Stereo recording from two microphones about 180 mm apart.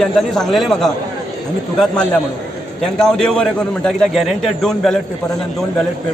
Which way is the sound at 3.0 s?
5° left (ahead or behind).